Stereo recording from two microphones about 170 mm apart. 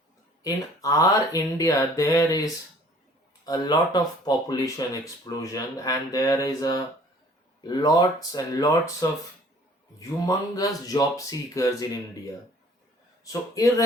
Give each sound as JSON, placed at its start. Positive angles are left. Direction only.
{"t": 0.4, "sound": "speech", "side_deg": 20}
{"t": 13.2, "sound": "speech", "side_deg": 20}